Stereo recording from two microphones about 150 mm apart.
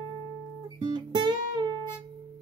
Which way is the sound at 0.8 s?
30° right (ahead or behind).